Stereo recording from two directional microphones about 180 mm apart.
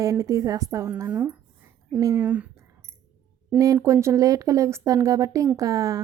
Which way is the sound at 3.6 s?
20° right (ahead or behind).